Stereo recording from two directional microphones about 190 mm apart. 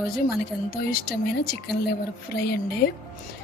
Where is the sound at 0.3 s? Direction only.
55° left (ahead or behind).